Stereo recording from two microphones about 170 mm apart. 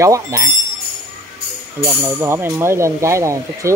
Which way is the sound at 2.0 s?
15° right (ahead or behind).